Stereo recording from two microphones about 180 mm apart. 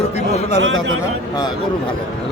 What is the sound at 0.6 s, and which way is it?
Speech, 90° right.